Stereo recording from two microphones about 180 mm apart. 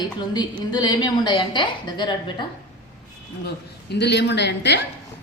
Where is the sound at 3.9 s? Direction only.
70° left (ahead or behind).